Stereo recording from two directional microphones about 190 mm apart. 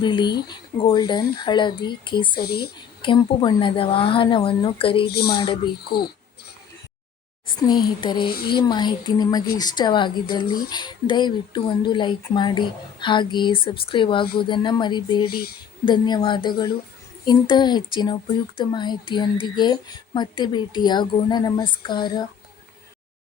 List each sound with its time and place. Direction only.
0.0 s speech: 25° left (ahead or behind)
2.4 s speech: 55° left (ahead or behind)
3.0 s speech: 25° left (ahead or behind)
5.1 s speech: 55° left (ahead or behind)
5.6 s speech: 25° left (ahead or behind)
7.4 s speech: 20° left (ahead or behind)